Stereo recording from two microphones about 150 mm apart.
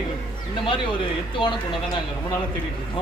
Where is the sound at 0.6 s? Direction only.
35° left (ahead or behind).